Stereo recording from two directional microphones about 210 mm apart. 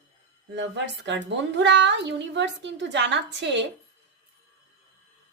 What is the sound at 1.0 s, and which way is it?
A woman's voice, 55° right (ahead or behind).